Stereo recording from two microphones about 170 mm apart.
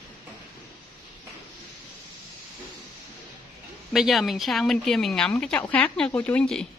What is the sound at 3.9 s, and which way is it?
A woman's voice, centre (ahead or behind).